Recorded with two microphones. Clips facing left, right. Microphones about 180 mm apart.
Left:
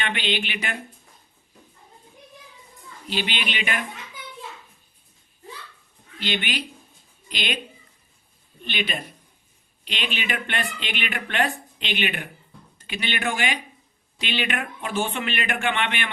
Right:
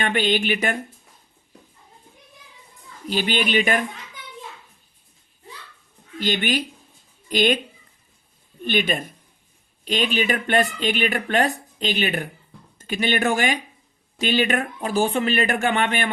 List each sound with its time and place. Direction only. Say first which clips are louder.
0.0 s speech: right 6 dB; 45° right (ahead or behind)
3.1 s speech: right 7 dB; 45° right (ahead or behind)
6.1 s a woman's voice: right 5 dB; 45° right (ahead or behind)
8.6 s speech: right 7 dB; 45° right (ahead or behind)